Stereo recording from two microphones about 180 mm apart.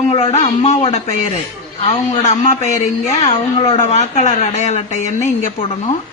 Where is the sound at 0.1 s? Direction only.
35° left (ahead or behind).